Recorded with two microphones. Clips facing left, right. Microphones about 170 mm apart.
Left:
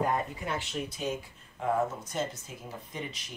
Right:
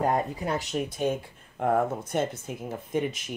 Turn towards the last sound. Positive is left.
turn(degrees=-55)  # may be behind; listen again after turning